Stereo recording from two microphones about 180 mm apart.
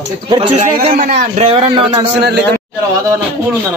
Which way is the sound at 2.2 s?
65° right (ahead or behind).